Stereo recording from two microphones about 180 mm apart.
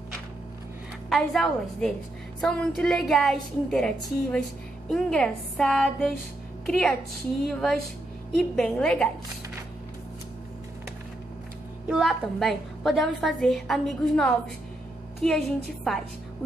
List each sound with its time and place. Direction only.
1.1 s a woman's voice: centre (ahead or behind)
11.9 s a woman's voice: centre (ahead or behind)